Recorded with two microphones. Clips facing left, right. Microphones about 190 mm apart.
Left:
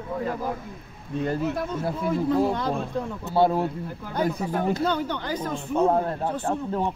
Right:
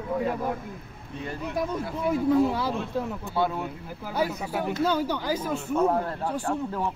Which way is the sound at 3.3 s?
35° left (ahead or behind).